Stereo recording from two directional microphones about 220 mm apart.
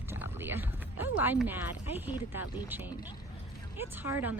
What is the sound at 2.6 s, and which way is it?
Speech, 10° right (ahead or behind).